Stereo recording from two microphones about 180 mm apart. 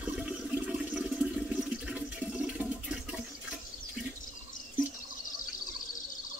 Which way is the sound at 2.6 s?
5° right (ahead or behind).